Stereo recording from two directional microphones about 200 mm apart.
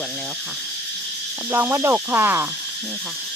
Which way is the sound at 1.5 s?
10° right (ahead or behind).